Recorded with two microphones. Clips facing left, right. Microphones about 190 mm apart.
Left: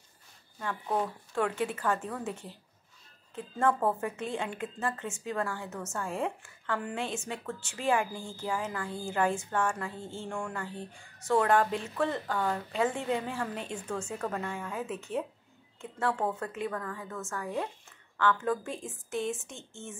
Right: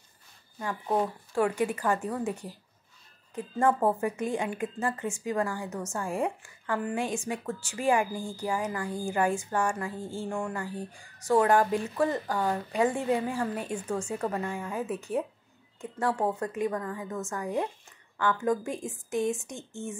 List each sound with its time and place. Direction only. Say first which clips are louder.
0.6 s a woman's voice: right 3 dB; 10° right (ahead or behind)
3.3 s a woman's voice: right 3 dB; 10° right (ahead or behind)